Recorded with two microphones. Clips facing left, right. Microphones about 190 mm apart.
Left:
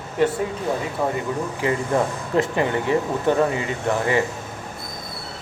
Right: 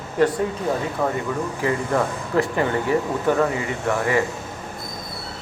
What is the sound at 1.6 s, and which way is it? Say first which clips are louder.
Speech: left 1 dB; 20° left (ahead or behind).